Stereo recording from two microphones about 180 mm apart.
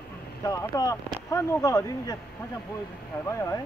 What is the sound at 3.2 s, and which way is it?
Speech, 15° left (ahead or behind).